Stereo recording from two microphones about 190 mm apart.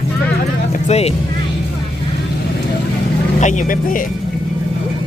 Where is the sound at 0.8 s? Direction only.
35° left (ahead or behind).